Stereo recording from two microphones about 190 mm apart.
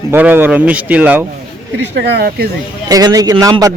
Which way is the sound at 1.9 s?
60° right (ahead or behind).